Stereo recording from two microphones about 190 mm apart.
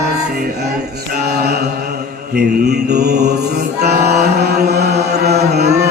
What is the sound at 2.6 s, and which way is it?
Music, 60° right (ahead or behind).